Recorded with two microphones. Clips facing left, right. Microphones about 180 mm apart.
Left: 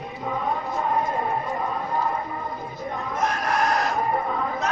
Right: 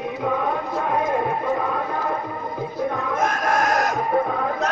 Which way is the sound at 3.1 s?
50° right (ahead or behind).